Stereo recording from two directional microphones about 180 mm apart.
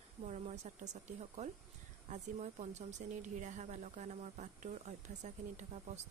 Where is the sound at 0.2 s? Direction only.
40° right (ahead or behind).